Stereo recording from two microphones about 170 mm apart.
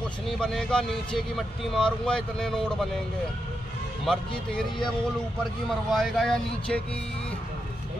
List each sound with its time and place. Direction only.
0.4 s speech: 5° left (ahead or behind)
4.0 s speech: centre (ahead or behind)